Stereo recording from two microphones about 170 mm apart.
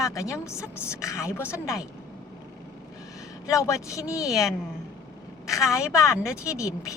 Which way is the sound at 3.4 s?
15° left (ahead or behind).